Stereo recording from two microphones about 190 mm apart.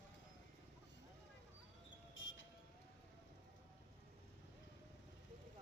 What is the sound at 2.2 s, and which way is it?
Music, 80° left.